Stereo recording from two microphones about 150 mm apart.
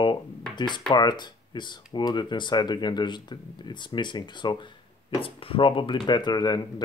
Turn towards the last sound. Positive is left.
turn(degrees=25)  # may be behind; listen again after turning